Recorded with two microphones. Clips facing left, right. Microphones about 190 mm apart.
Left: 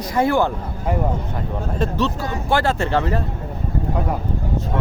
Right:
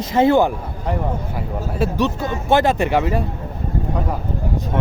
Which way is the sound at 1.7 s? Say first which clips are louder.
Right 2 dB; 10° right (ahead or behind).